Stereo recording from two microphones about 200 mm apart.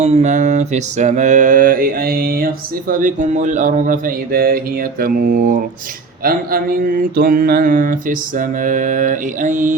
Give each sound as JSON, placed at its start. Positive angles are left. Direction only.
{"t": 0.0, "sound": "mantra", "side_deg": -35}
{"t": 2.9, "sound": "speech", "side_deg": -40}
{"t": 7.2, "sound": "mantra", "side_deg": -45}